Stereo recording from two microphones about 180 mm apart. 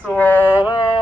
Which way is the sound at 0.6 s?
25° left (ahead or behind).